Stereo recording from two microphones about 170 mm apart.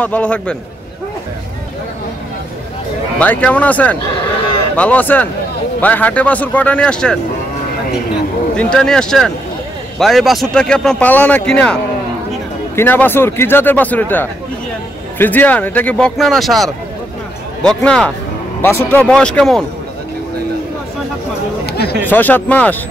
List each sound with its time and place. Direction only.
0.0 s speech: 10° left (ahead or behind)
3.2 s speech: 10° left (ahead or behind)
8.5 s a man's voice: 5° left (ahead or behind)
21.6 s chatter: 70° left (ahead or behind)
22.0 s speech: 10° left (ahead or behind)